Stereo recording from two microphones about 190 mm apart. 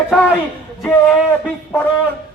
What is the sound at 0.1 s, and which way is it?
Speech, centre (ahead or behind).